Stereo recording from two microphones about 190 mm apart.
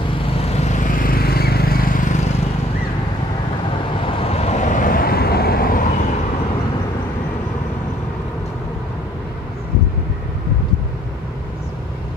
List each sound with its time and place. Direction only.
0.4 s vehicle: 35° left (ahead or behind)
4.2 s vehicle: 35° left (ahead or behind)